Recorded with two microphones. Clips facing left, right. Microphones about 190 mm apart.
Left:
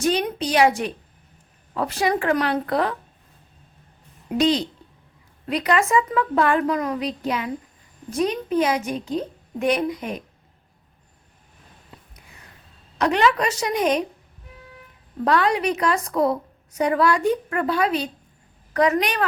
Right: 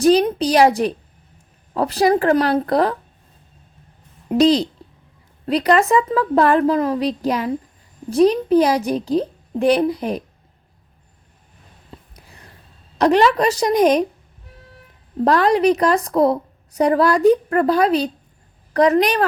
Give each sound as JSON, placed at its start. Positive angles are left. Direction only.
{"t": 0.0, "sound": "a woman's voice", "side_deg": -35}
{"t": 4.3, "sound": "a woman's voice", "side_deg": -35}
{"t": 13.0, "sound": "a woman's voice", "side_deg": -35}
{"t": 15.2, "sound": "a woman's voice", "side_deg": -35}